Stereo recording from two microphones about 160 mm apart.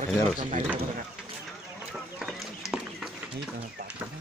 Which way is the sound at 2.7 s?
5° right (ahead or behind).